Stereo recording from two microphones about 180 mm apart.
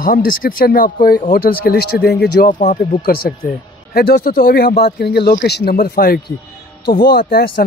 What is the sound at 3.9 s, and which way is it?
Speech, 60° left (ahead or behind).